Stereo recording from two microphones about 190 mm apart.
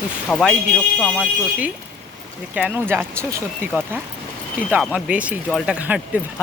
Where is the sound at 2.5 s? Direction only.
10° right (ahead or behind).